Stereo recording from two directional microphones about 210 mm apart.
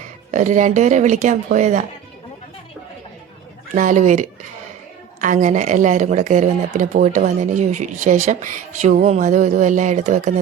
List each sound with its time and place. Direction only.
0.3 s speech: 35° right (ahead or behind)
3.8 s speech: 35° right (ahead or behind)